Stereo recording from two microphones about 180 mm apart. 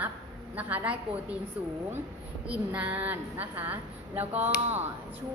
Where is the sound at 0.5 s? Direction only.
10° right (ahead or behind).